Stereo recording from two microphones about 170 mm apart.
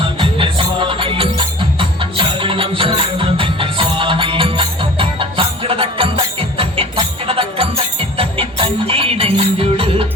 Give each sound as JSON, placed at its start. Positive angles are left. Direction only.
{"t": 0.0, "sound": "music", "side_deg": -30}